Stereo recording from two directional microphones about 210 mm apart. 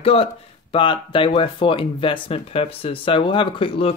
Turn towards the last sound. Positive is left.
turn(degrees=25)  # may be behind; listen again after turning